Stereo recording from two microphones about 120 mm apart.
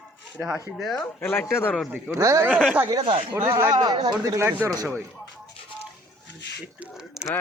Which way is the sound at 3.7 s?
35° right (ahead or behind).